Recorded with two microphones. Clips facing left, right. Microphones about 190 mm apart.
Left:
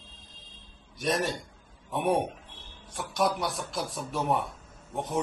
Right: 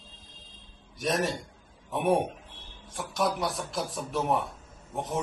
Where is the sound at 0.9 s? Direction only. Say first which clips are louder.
Even; centre (ahead or behind).